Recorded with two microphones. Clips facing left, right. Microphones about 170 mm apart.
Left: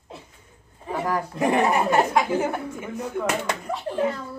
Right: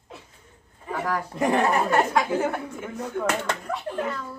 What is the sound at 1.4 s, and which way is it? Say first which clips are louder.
Speech: left 1 dB; 10° left (ahead or behind).